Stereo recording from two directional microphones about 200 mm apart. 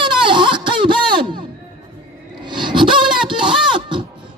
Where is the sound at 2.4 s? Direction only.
25° right (ahead or behind).